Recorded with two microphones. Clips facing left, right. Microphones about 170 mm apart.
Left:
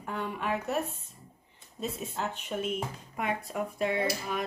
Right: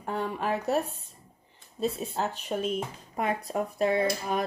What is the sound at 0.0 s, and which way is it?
Speech, 35° right (ahead or behind).